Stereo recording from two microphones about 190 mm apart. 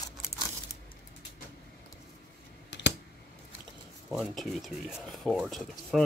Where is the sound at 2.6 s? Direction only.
65° left (ahead or behind).